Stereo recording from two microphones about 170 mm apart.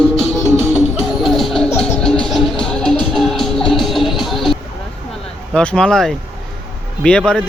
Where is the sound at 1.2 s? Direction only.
Centre (ahead or behind).